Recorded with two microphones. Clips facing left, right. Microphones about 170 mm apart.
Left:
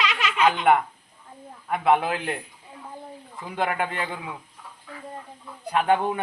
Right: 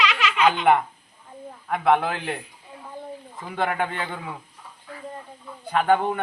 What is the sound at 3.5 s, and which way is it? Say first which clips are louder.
Speech: right 1 dB; centre (ahead or behind).